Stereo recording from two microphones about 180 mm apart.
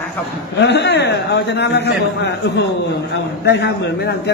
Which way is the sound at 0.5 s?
70° left (ahead or behind).